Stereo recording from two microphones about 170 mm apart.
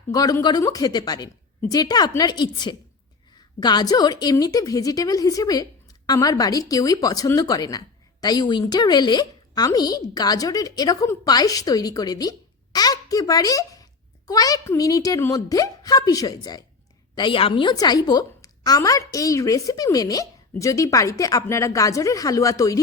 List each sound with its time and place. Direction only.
0.1 s speech: 20° left (ahead or behind)